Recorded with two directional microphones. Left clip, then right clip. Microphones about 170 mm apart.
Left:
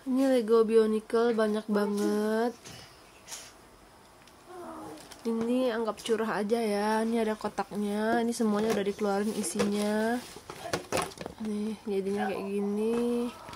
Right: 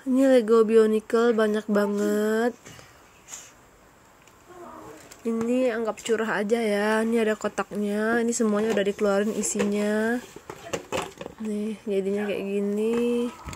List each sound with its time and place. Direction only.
0.1 s speech: 30° right (ahead or behind)
5.5 s speech: 15° right (ahead or behind)
10.9 s a sound: 5° right (ahead or behind)
11.5 s speech: 20° right (ahead or behind)